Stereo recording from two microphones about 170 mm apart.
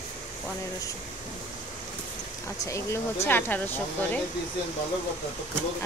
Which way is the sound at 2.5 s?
20° left (ahead or behind).